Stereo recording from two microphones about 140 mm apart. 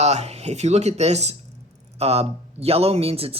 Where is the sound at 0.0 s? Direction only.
50° right (ahead or behind).